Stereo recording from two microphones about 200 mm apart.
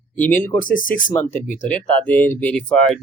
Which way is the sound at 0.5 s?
40° left (ahead or behind).